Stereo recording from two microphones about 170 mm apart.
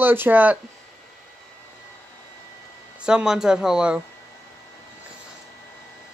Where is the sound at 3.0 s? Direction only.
5° right (ahead or behind).